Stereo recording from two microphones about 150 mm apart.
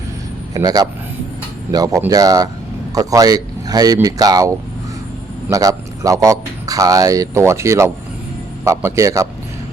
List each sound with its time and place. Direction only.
0.5 s speech: 25° right (ahead or behind)